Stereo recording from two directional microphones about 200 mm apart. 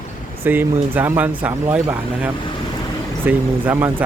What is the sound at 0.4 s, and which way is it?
Speech, 10° right (ahead or behind).